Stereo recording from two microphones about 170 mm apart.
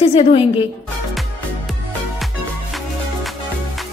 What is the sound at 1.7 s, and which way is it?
Music, centre (ahead or behind).